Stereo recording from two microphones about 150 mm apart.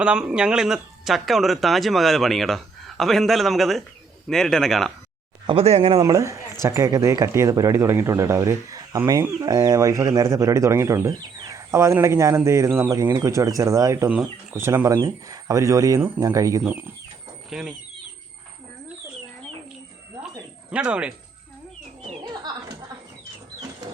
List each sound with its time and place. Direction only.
0.0 s speech: 5° right (ahead or behind)
5.5 s speech: 40° right (ahead or behind)
6.0 s speech: 25° right (ahead or behind)
16.0 s speech: 10° right (ahead or behind)
16.2 s speech: 20° right (ahead or behind)
17.5 s speech: 5° right (ahead or behind)
20.7 s speech: 5° right (ahead or behind)
22.0 s a sound: 30° right (ahead or behind)